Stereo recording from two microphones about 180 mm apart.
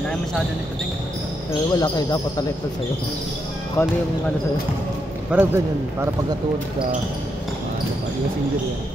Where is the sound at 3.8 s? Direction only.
15° left (ahead or behind).